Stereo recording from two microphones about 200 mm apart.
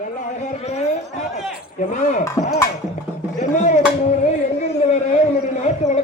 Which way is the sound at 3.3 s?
35° left (ahead or behind).